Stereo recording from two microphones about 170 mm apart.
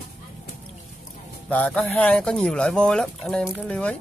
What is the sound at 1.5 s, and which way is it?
Speech, 10° left (ahead or behind).